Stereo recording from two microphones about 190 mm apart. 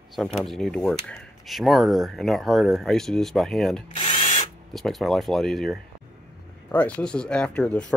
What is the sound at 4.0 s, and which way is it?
Drill, 30° left (ahead or behind).